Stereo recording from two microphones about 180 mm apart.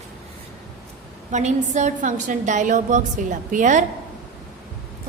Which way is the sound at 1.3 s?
40° right (ahead or behind).